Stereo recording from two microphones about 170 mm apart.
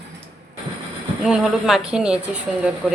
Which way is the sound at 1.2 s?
5° right (ahead or behind).